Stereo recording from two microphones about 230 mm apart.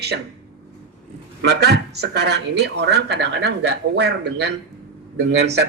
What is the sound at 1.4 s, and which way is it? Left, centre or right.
Speech, right.